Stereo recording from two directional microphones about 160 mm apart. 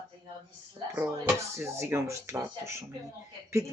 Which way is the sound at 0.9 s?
10° right (ahead or behind).